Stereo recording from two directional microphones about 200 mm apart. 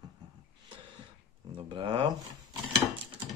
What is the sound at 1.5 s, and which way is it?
Speech, 30° right (ahead or behind).